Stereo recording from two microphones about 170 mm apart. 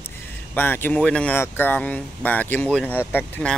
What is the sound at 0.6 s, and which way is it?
Speech, 10° left (ahead or behind).